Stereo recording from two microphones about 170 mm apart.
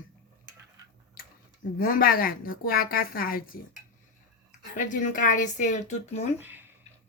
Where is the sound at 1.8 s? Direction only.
55° left (ahead or behind).